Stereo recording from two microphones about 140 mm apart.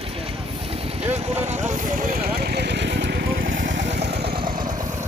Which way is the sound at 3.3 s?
90° right.